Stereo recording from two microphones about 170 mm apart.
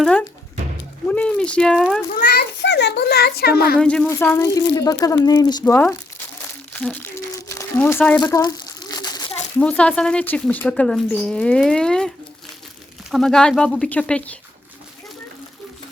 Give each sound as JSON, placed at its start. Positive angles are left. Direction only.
{"t": 0.0, "sound": "speech", "side_deg": 5}
{"t": 2.1, "sound": "a child's voice", "side_deg": 80}
{"t": 3.8, "sound": "speech", "side_deg": 5}
{"t": 5.7, "sound": "speech", "side_deg": 10}
{"t": 6.7, "sound": "crumpling", "side_deg": 10}
{"t": 8.2, "sound": "crumpling", "side_deg": 20}
{"t": 9.6, "sound": "speech", "side_deg": 5}